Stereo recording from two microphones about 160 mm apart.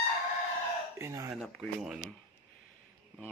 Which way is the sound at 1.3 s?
Centre (ahead or behind).